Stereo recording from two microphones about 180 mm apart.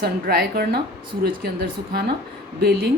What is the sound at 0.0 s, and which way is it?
A woman's voice, 60° right (ahead or behind).